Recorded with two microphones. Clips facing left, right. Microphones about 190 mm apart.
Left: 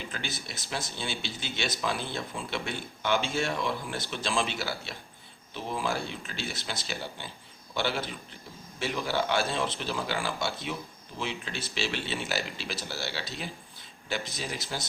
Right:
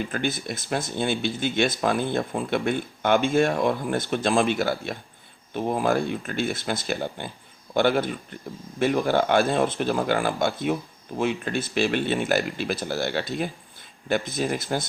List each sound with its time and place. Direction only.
0.0 s speech: 55° right (ahead or behind)